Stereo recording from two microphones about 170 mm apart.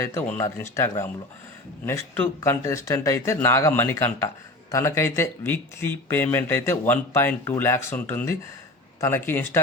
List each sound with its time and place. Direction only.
0.0 s speech: 15° left (ahead or behind)